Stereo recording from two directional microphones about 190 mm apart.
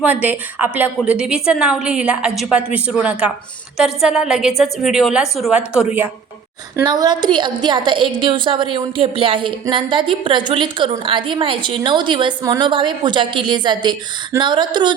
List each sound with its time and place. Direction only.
0.0 s a woman's voice: 10° right (ahead or behind)
6.7 s a woman's voice: 20° right (ahead or behind)